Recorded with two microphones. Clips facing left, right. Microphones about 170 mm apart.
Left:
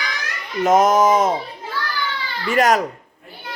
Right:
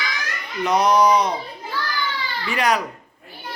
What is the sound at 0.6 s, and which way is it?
Speech, 45° left (ahead or behind).